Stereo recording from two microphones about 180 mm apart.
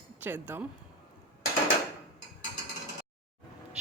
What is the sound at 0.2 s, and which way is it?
Speech, 10° right (ahead or behind).